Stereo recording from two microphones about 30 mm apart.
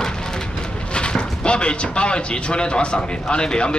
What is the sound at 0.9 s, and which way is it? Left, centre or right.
Speech, left.